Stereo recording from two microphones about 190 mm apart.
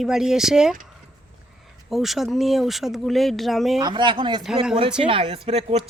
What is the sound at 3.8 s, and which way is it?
Speech, 25° right (ahead or behind).